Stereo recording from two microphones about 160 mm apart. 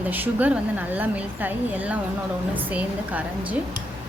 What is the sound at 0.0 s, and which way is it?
A woman's voice, 10° right (ahead or behind).